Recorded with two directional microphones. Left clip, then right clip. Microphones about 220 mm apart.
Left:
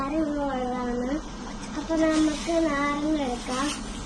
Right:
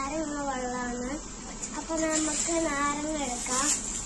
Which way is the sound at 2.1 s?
35° right (ahead or behind).